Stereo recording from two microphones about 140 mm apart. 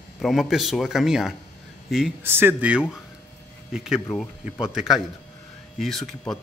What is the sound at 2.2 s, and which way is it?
Speech, 15° right (ahead or behind).